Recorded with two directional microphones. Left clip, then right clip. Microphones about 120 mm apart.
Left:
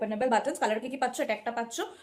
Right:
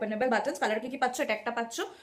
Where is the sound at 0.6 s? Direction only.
10° left (ahead or behind).